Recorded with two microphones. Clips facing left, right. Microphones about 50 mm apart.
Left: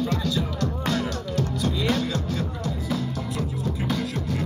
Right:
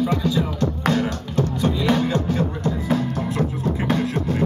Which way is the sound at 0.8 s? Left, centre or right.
Right.